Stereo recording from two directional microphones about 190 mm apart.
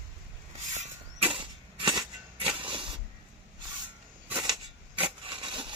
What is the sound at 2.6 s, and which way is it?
Printer, 25° right (ahead or behind).